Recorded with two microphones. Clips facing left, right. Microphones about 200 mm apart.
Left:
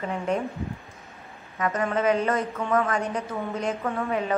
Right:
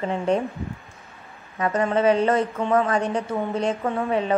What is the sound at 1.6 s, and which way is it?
A woman's voice, 30° right (ahead or behind).